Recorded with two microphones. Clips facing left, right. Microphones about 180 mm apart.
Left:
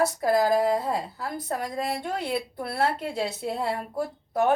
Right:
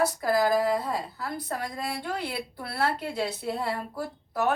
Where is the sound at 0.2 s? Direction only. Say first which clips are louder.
Left 2 dB; 35° left (ahead or behind).